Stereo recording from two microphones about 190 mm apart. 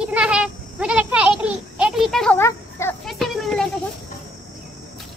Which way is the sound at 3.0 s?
Centre (ahead or behind).